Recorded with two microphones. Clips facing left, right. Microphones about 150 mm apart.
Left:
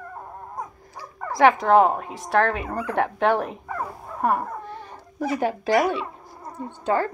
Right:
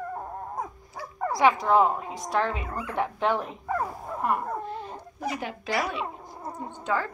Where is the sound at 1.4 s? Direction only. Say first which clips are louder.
Left 5 dB; 60° left (ahead or behind).